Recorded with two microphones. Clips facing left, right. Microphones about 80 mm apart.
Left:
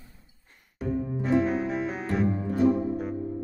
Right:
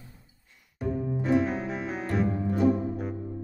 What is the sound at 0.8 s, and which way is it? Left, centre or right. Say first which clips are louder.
Music: even; centre.